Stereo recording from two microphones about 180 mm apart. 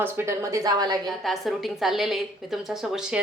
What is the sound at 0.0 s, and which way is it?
Speech, 15° right (ahead or behind).